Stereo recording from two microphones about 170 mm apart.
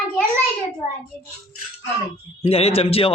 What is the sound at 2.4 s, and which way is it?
Speech, 35° left (ahead or behind).